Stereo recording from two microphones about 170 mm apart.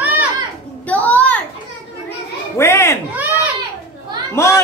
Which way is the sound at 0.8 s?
10° left (ahead or behind).